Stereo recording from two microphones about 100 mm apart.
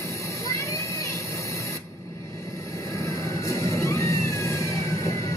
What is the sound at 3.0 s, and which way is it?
Music, 30° left (ahead or behind).